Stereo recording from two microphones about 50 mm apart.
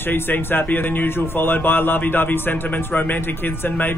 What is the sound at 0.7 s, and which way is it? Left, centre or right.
Speech, left.